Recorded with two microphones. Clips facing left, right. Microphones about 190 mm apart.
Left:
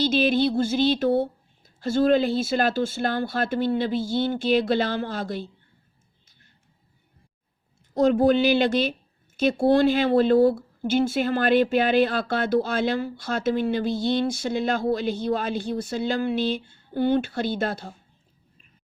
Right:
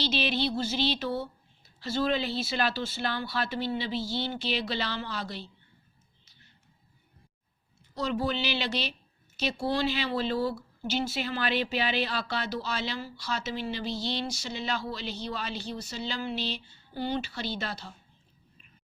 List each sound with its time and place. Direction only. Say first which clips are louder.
0.0 s speech: left 8 dB; 45° left (ahead or behind)
7.9 s speech: left 12 dB; 50° left (ahead or behind)